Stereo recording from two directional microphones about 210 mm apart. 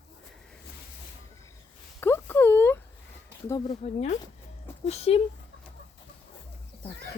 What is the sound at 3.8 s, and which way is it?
Speech, 30° left (ahead or behind).